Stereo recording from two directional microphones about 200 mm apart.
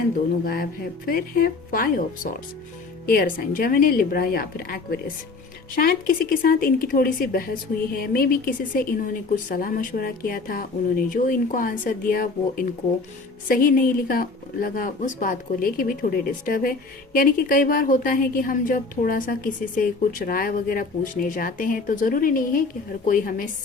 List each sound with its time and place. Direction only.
0.4 s a woman's voice: 50° left (ahead or behind)